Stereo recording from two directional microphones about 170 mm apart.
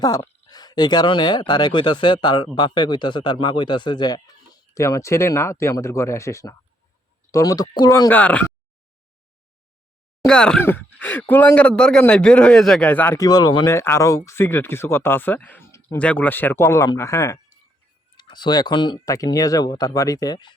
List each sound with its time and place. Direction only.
0.4 s speech: 25° left (ahead or behind)
10.2 s speech: 5° left (ahead or behind)
13.2 s speech: 25° left (ahead or behind)
13.7 s speech: 15° left (ahead or behind)